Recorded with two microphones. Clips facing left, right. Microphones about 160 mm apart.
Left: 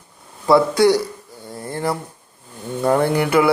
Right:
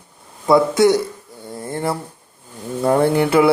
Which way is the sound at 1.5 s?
25° right (ahead or behind).